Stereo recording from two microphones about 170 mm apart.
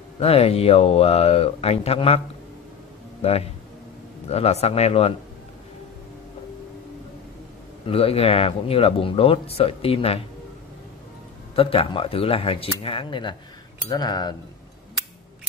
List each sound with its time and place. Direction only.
0.2 s a man's voice: 35° left (ahead or behind)
7.8 s speech: 35° left (ahead or behind)
11.5 s speech: 35° left (ahead or behind)
13.8 s cutlery: 25° left (ahead or behind)